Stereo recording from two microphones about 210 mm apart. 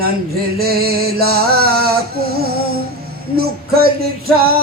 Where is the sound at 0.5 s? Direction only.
45° right (ahead or behind).